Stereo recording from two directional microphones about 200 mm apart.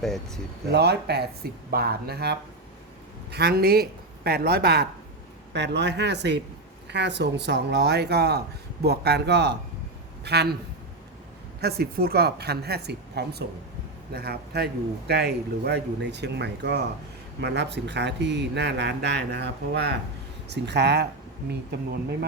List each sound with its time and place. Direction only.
0.0 s speech: centre (ahead or behind)
0.7 s a man's voice: 55° right (ahead or behind)
3.3 s a woman's voice: 55° right (ahead or behind)
11.6 s a woman's voice: 50° right (ahead or behind)